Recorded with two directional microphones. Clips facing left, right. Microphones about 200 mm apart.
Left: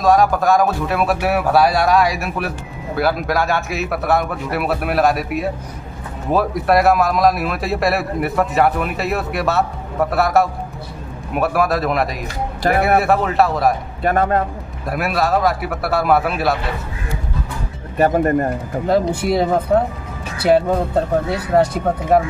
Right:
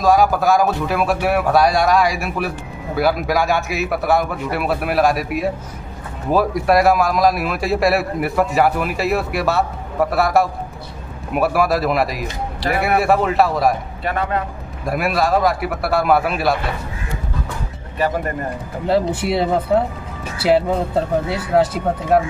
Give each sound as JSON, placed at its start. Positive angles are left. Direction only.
{"t": 0.0, "sound": "a man's voice", "side_deg": 0}
{"t": 14.0, "sound": "speech", "side_deg": 45}
{"t": 14.9, "sound": "a man's voice", "side_deg": 0}
{"t": 17.9, "sound": "speech", "side_deg": 50}
{"t": 18.9, "sound": "a man's voice", "side_deg": -5}
{"t": 22.1, "sound": "a man's voice", "side_deg": 0}